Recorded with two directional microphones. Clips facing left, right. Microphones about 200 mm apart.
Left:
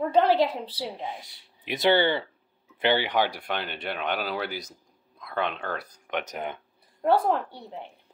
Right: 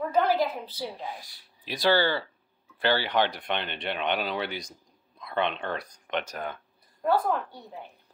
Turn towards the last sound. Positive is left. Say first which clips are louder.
# left 3 dB
turn(degrees=25)  # may be behind; listen again after turning